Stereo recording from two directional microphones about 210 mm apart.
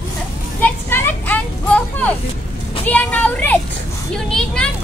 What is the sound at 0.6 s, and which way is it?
Vehicle, 10° left (ahead or behind).